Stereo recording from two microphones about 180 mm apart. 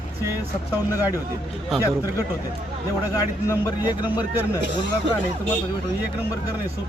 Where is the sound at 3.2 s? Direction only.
20° left (ahead or behind).